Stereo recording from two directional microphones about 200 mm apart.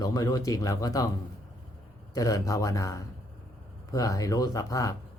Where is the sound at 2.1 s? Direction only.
15° left (ahead or behind).